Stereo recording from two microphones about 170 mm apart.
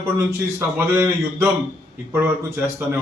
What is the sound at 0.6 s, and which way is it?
A man's voice, 10° right (ahead or behind).